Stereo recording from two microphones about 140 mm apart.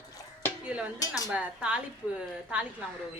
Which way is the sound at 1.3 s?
10° right (ahead or behind).